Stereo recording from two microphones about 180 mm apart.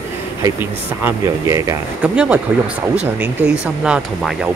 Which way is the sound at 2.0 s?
10° right (ahead or behind).